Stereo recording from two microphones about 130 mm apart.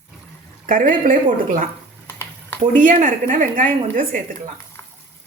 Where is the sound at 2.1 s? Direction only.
20° left (ahead or behind).